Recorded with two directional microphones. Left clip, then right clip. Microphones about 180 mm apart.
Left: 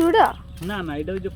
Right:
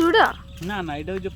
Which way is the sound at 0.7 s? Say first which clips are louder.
Left 1 dB; 35° right (ahead or behind).